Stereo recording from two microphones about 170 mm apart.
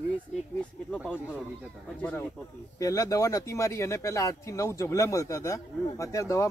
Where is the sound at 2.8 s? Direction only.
20° left (ahead or behind).